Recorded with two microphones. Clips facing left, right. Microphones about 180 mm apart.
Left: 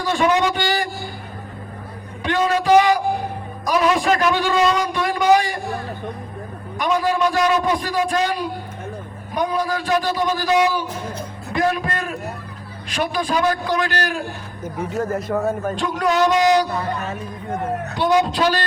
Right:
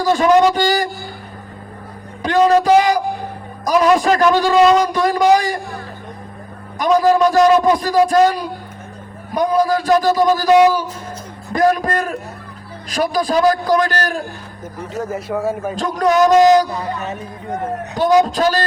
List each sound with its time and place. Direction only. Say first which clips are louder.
0.0 s a man's voice: right 6 dB; 40° right (ahead or behind)
2.2 s a man's voice: right 6 dB; 40° right (ahead or behind)
6.7 s a man's voice: right 6 dB; 40° right (ahead or behind)
14.9 s a man's voice: even; 5° right (ahead or behind)
15.8 s a man's voice: right 5 dB; 40° right (ahead or behind)
17.9 s a man's voice: right 5 dB; 40° right (ahead or behind)